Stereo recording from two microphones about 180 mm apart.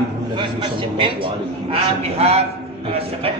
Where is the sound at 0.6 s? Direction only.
30° right (ahead or behind).